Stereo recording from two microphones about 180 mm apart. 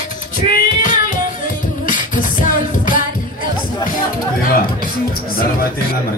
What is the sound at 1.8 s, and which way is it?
Music, 45° left (ahead or behind).